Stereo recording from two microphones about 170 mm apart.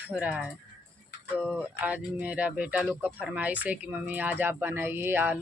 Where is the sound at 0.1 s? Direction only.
5° right (ahead or behind).